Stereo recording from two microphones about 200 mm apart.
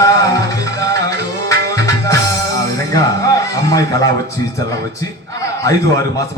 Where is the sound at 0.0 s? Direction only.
15° left (ahead or behind).